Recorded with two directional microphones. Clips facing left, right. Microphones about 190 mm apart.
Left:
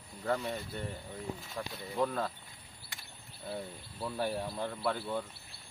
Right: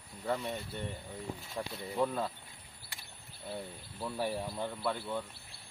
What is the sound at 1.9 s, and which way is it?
Speech, 5° right (ahead or behind).